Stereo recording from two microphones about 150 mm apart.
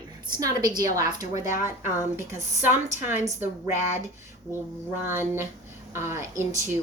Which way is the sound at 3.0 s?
15° right (ahead or behind).